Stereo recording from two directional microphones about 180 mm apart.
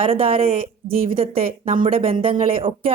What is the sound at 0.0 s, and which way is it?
Speech, 30° right (ahead or behind).